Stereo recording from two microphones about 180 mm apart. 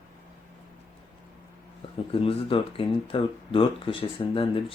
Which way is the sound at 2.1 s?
30° left (ahead or behind).